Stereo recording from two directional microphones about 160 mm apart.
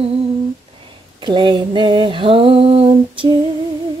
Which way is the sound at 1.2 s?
30° right (ahead or behind).